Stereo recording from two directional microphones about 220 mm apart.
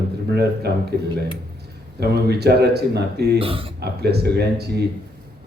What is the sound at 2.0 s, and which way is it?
Speech, 45° right (ahead or behind).